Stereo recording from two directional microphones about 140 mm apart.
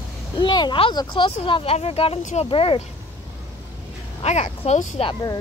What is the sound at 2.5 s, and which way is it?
Speech, 40° left (ahead or behind).